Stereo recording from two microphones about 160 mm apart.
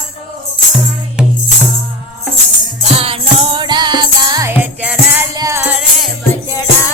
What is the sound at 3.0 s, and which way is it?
Music, 35° right (ahead or behind).